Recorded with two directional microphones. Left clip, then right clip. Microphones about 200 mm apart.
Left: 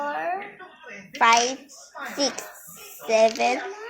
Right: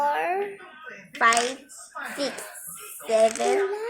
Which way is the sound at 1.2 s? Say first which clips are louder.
Left 2 dB; 10° left (ahead or behind).